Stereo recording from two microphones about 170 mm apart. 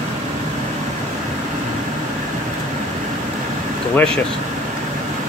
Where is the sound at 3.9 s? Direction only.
5° left (ahead or behind).